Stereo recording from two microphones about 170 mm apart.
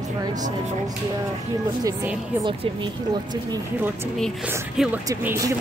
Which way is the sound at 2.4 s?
25° right (ahead or behind).